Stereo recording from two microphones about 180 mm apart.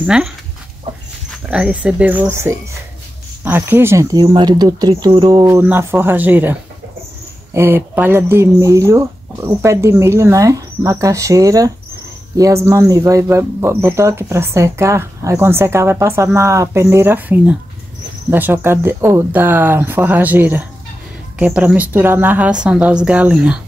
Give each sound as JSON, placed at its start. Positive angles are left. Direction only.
{"t": 0.0, "sound": "speech", "side_deg": -5}
{"t": 1.5, "sound": "speech", "side_deg": -5}
{"t": 7.5, "sound": "speech", "side_deg": -15}